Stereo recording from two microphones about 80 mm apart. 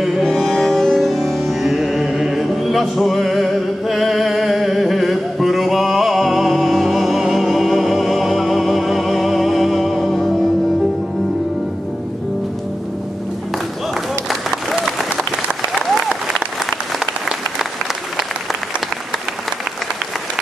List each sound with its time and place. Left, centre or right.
0.0 s music: centre
14.5 s applause: centre